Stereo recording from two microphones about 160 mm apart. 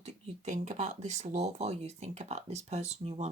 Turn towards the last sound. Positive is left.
turn(degrees=-40)  # may be behind; listen again after turning